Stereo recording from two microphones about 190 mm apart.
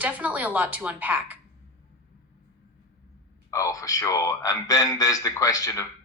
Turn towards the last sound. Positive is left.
turn(degrees=15)  # may be behind; listen again after turning